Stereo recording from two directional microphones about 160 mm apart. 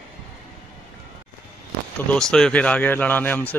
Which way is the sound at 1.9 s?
5° left (ahead or behind).